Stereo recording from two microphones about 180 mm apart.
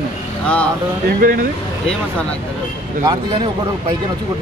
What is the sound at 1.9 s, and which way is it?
Speech, 5° left (ahead or behind).